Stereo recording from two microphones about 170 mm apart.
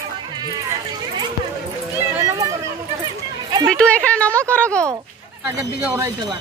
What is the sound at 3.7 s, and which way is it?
Speech, 5° left (ahead or behind).